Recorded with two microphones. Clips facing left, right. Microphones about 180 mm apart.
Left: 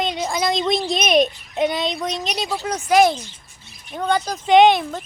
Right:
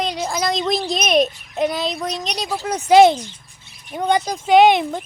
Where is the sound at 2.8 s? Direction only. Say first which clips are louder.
Right 5 dB; 25° right (ahead or behind).